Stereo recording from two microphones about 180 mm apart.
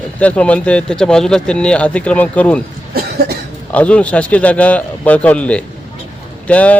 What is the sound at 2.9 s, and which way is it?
Cough, 60° right (ahead or behind).